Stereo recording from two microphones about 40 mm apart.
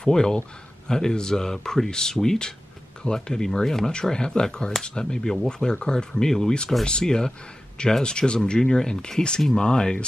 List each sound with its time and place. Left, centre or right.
0.0 s speech: centre